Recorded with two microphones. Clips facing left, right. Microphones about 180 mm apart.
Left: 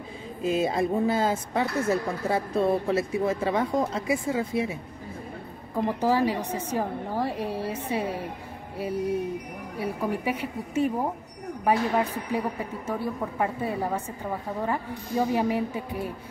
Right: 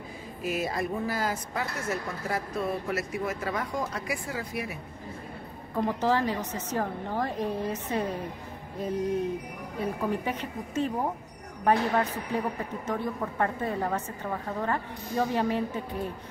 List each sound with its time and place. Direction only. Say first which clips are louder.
0.4 s speech: left 6 dB; 25° left (ahead or behind)
5.9 s speech: left 3 dB; 10° left (ahead or behind)
9.8 s speech: left 1 dB; 10° left (ahead or behind)